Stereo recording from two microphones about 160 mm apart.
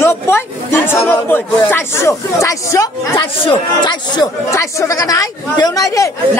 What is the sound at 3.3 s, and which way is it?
Speech, 30° left (ahead or behind).